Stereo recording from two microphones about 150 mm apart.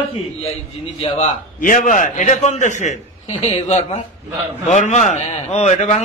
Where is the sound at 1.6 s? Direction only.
60° left (ahead or behind).